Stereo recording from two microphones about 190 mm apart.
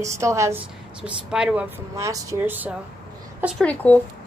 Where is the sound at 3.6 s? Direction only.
10° left (ahead or behind).